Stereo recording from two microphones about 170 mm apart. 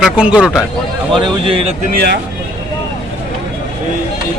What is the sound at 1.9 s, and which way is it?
Speech, 75° right (ahead or behind).